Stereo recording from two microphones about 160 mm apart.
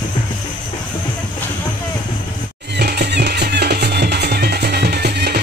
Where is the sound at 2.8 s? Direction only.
90° right.